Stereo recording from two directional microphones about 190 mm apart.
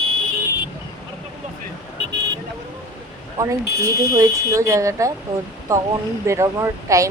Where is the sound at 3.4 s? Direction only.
15° right (ahead or behind).